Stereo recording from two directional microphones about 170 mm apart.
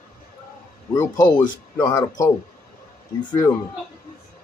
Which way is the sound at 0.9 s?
20° left (ahead or behind).